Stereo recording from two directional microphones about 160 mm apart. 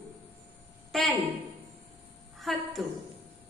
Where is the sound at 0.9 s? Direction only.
Centre (ahead or behind).